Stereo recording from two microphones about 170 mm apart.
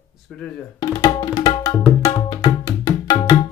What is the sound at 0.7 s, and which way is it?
Tabla, 20° left (ahead or behind).